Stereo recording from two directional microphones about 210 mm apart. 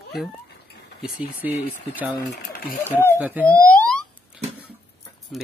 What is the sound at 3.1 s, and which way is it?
Speech, 10° right (ahead or behind).